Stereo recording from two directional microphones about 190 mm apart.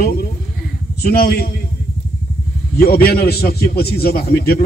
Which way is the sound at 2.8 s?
55° left (ahead or behind).